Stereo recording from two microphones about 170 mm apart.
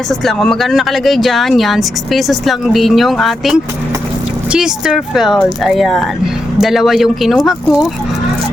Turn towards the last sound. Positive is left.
turn(degrees=0)  # may be behind; listen again after turning